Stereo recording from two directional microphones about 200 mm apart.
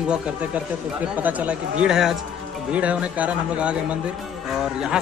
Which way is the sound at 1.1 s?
10° right (ahead or behind).